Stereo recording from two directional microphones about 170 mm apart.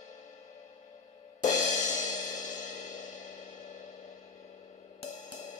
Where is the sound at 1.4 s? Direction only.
45° left (ahead or behind).